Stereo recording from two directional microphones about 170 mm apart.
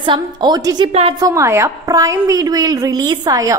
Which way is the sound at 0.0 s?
25° right (ahead or behind).